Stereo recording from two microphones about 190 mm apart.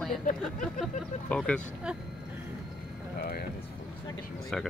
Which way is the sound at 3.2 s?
50° left (ahead or behind).